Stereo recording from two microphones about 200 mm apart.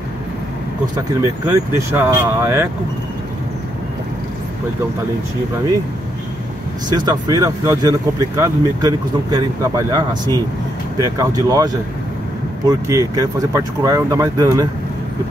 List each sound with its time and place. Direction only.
1.2 s speech: 15° right (ahead or behind)
6.9 s speech: 20° right (ahead or behind)